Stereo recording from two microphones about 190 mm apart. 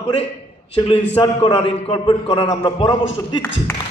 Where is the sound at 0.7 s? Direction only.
25° left (ahead or behind).